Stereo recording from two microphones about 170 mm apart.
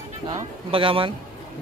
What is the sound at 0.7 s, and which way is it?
Speech, 30° right (ahead or behind).